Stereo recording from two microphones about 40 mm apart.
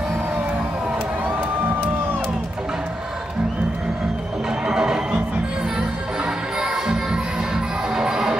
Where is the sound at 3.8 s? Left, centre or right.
Centre.